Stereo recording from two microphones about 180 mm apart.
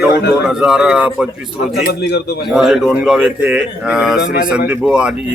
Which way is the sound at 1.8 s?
70° left (ahead or behind).